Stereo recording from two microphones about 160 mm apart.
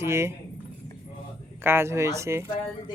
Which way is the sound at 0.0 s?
15° right (ahead or behind).